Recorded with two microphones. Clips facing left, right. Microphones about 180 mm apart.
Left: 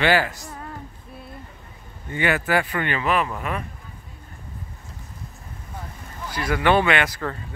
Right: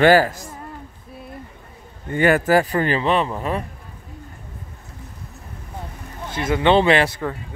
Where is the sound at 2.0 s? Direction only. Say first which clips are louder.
Right 6 dB; 45° right (ahead or behind); by 3.6 s 30° right (ahead or behind).